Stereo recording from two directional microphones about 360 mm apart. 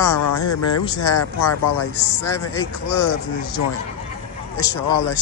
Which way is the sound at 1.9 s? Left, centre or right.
Right.